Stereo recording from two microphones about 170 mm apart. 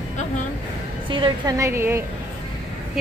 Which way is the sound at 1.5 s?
15° right (ahead or behind).